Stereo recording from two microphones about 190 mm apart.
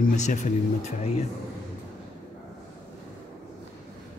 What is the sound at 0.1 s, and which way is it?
Speech, 40° left (ahead or behind).